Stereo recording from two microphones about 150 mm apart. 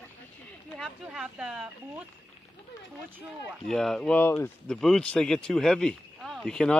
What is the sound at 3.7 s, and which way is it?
Speech, 5° left (ahead or behind).